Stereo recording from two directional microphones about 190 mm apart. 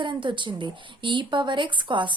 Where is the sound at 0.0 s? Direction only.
25° right (ahead or behind).